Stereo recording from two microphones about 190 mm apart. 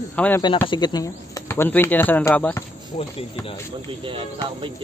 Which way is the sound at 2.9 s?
40° left (ahead or behind).